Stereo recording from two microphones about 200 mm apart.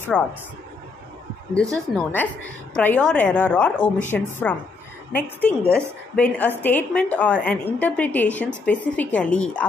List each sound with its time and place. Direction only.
0.1 s a woman's voice: 5° left (ahead or behind)
1.5 s a woman's voice: 5° left (ahead or behind)